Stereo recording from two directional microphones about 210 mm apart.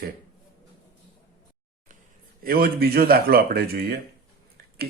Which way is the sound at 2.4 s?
45° right (ahead or behind).